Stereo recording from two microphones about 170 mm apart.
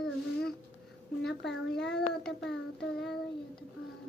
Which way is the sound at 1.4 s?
80° left.